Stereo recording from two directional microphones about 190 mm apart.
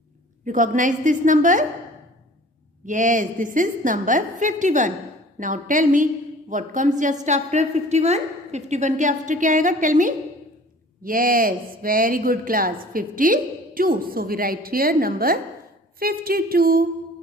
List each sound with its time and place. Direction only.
0.5 s speech: 40° right (ahead or behind)
2.8 s a woman's voice: 40° right (ahead or behind)